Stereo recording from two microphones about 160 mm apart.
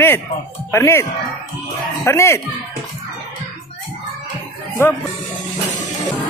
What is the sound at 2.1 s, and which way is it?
Speech, 15° left (ahead or behind).